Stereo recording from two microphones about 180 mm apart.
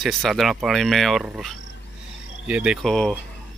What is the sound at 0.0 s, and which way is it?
Speech, centre (ahead or behind).